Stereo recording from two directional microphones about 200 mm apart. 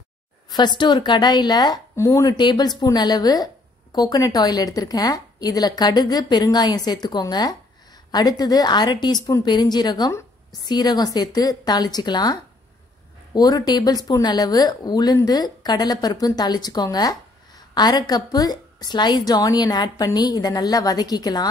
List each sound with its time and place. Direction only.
0.5 s speech: 20° left (ahead or behind)